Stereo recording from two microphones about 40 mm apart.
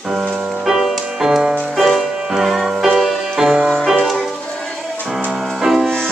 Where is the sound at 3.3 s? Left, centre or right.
Centre.